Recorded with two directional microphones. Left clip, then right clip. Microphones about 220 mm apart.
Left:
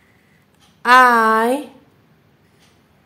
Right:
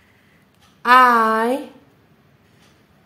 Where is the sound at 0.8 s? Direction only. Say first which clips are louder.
Left 1 dB; 10° left (ahead or behind).